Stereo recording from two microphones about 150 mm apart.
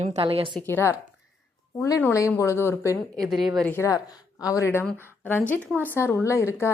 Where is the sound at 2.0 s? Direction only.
20° left (ahead or behind).